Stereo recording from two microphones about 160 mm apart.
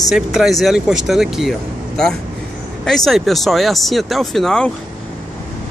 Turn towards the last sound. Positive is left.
turn(degrees=5)  # may be behind; listen again after turning